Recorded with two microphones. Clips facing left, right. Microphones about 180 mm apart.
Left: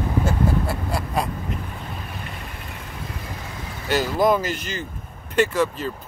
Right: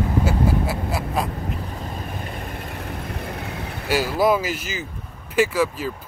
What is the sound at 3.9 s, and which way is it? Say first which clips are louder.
Speech: even; 5° right (ahead or behind).